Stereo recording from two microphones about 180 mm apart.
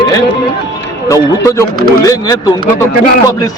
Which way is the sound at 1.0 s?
15° left (ahead or behind).